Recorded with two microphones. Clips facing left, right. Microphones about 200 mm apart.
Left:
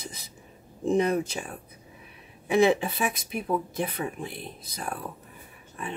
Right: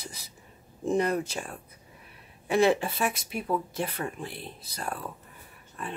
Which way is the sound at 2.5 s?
15° left (ahead or behind).